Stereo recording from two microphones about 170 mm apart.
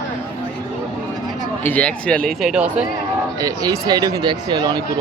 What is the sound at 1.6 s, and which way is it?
Speech, 10° left (ahead or behind).